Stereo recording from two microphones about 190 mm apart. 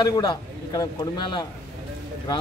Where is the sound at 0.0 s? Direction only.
20° left (ahead or behind).